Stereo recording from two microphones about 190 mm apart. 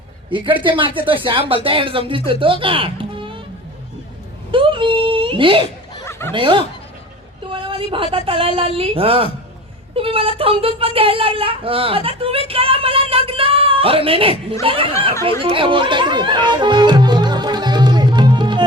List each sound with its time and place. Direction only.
0.3 s speech: 25° right (ahead or behind)
4.5 s speech: 25° right (ahead or behind)
6.0 s snicker: 15° left (ahead or behind)
6.3 s speech: 25° right (ahead or behind)
7.5 s a sound: 30° right (ahead or behind)
8.1 s speech: 30° right (ahead or behind)
15.4 s music: 25° right (ahead or behind)